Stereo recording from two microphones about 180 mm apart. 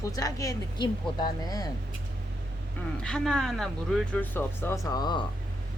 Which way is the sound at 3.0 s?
5° left (ahead or behind).